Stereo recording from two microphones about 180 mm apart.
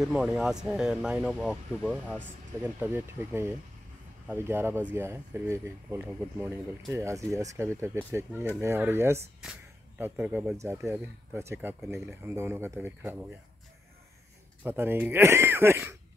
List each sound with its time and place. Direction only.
0.0 s speech: centre (ahead or behind)
6.9 s speech: 15° right (ahead or behind)
14.6 s speech: 10° right (ahead or behind)